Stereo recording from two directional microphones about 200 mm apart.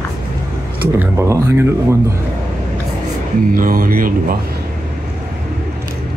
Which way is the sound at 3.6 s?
45° right (ahead or behind).